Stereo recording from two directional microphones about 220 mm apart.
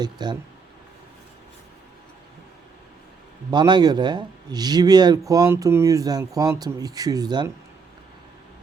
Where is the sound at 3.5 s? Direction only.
20° right (ahead or behind).